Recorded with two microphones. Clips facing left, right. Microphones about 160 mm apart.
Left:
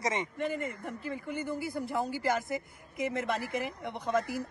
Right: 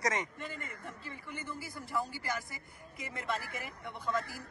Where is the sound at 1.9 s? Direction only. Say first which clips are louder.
Left 5 dB; 60° left (ahead or behind).